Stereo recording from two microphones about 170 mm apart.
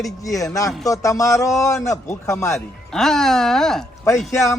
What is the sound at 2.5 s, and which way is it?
Speech, centre (ahead or behind).